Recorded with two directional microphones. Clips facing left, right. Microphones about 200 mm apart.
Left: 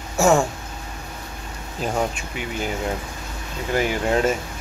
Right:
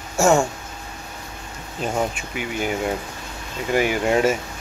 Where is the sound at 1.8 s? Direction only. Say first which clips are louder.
Even; 5° right (ahead or behind).